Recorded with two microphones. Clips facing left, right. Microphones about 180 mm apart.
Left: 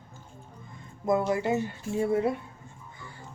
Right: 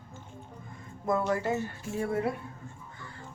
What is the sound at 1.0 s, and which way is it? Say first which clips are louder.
Speech: left 3 dB; 15° left (ahead or behind).